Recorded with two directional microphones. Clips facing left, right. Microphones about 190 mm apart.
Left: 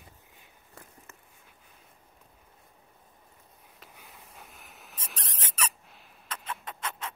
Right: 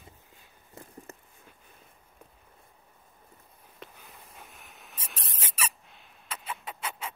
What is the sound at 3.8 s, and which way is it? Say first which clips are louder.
Mouse: right 4 dB; centre (ahead or behind).